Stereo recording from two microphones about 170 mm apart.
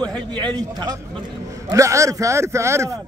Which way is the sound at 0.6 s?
25° right (ahead or behind).